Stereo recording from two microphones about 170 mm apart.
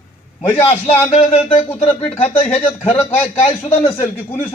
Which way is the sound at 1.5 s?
35° left (ahead or behind).